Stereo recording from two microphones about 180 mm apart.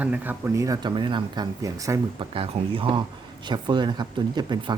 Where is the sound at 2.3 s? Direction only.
30° right (ahead or behind).